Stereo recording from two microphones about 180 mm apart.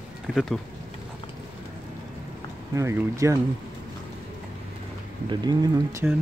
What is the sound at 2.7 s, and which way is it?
Speech, 15° right (ahead or behind).